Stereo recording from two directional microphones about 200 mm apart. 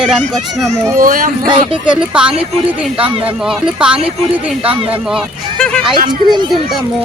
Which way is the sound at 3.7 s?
5° right (ahead or behind).